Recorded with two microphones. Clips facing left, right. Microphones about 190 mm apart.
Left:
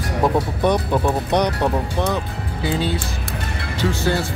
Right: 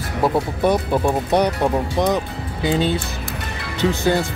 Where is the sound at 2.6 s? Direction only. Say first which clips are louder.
Right 3 dB; 20° right (ahead or behind).